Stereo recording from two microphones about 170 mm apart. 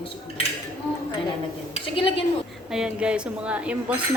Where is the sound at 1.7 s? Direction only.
30° left (ahead or behind).